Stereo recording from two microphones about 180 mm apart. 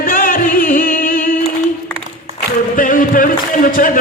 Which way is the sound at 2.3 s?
50° left (ahead or behind).